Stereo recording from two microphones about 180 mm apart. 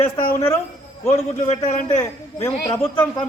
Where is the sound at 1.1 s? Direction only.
40° left (ahead or behind).